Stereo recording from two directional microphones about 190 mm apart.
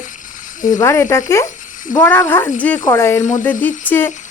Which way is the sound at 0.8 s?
15° left (ahead or behind).